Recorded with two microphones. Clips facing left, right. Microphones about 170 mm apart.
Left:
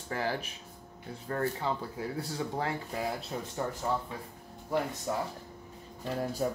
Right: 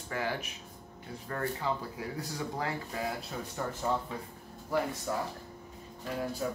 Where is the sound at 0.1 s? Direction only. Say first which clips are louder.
Left 1 dB; 35° left (ahead or behind).